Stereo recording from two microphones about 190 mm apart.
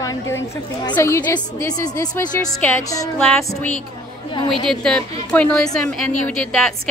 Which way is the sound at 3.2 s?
5° left (ahead or behind).